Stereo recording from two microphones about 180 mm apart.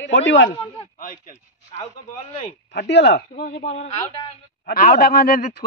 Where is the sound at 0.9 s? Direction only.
50° left (ahead or behind).